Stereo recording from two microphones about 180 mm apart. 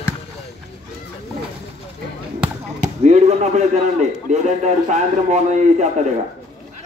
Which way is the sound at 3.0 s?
40° right (ahead or behind).